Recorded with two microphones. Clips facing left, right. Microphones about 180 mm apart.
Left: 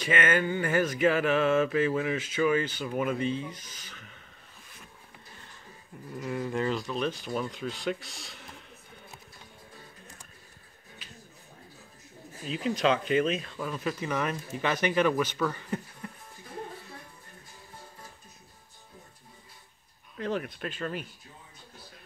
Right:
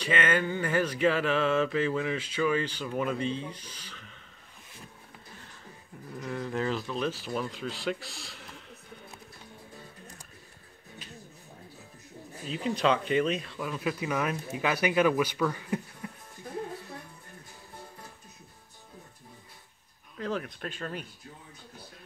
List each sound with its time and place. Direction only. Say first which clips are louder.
0.1 s mantra: left 1 dB; 5° left (ahead or behind)
3.9 s a sound: even; 5° left (ahead or behind)
6.1 s speech: left 2 dB; 5° left (ahead or behind)
12.6 s speech: even; centre (ahead or behind)
20.2 s speech: left 1 dB; centre (ahead or behind)